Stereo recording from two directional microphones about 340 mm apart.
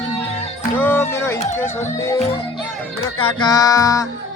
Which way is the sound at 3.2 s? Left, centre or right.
Centre.